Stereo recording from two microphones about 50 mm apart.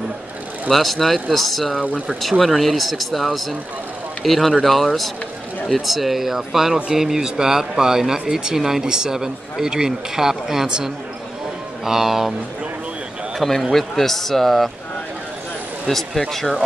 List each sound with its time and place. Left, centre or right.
0.7 s speech: centre
1.7 s speech: centre
2.2 s speech: centre
13.4 s speech: centre
15.9 s speech: centre